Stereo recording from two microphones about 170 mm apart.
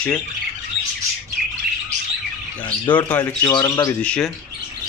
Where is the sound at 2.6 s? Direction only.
10° left (ahead or behind).